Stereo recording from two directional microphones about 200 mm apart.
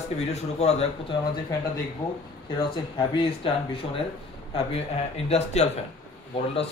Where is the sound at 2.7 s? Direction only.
25° left (ahead or behind).